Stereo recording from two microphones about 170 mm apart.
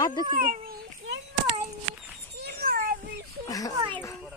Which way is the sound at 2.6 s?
60° right (ahead or behind).